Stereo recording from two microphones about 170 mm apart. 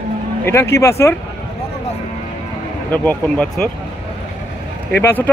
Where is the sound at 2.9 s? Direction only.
10° left (ahead or behind).